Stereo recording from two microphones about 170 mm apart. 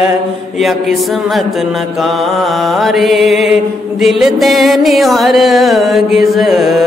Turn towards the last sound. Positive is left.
turn(degrees=0)  # may be behind; listen again after turning